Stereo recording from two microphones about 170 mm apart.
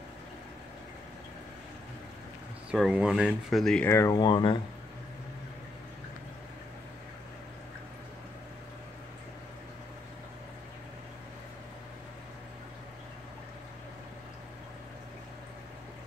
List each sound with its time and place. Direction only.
2.7 s speech: 5° right (ahead or behind)
3.9 s speech: 20° left (ahead or behind)